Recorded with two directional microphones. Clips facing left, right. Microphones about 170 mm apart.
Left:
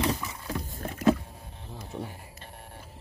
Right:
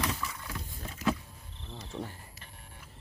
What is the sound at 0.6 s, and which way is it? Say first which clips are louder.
Rowboat: left 8 dB; 50° left (ahead or behind).